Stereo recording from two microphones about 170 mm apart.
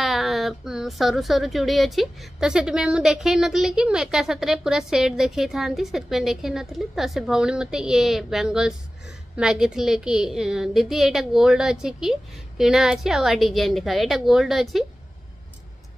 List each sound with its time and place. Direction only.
0.0 s a woman's voice: centre (ahead or behind)